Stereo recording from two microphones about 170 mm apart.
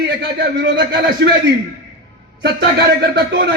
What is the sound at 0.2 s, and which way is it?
A man's voice, 90° right.